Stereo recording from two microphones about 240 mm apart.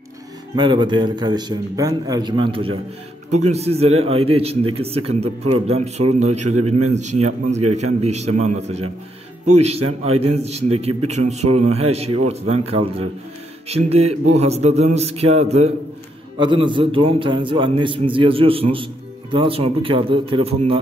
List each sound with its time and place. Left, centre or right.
0.6 s a man's voice: centre
6.5 s a man's voice: right
6.9 s a man's voice: right